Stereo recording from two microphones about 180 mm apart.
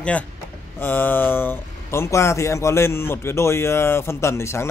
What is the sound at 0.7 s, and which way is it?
Speech, 10° left (ahead or behind).